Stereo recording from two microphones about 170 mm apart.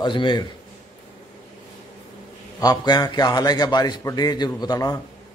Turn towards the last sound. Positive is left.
turn(degrees=20)  # may be behind; listen again after turning